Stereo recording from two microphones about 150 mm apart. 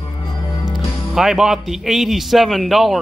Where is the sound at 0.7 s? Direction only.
5° right (ahead or behind).